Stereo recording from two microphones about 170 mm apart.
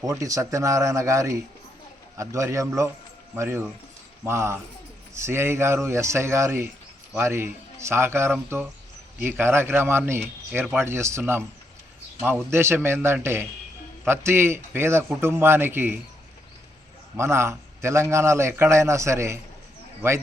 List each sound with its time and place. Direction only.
0.0 s a man's voice: 20° right (ahead or behind)
12.5 s a man's voice: 15° right (ahead or behind)
17.2 s a man's voice: 15° right (ahead or behind)